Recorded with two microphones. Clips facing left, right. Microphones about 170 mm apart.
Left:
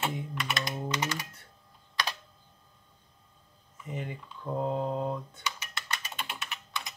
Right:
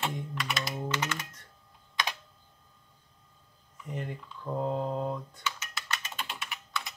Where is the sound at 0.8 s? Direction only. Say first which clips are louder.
Left 1 dB; 15° left (ahead or behind).